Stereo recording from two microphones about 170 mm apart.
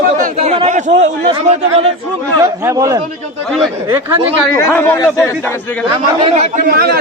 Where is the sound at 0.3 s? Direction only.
40° right (ahead or behind).